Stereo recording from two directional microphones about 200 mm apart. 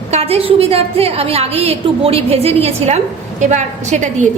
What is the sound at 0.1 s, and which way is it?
A woman's voice, 30° right (ahead or behind).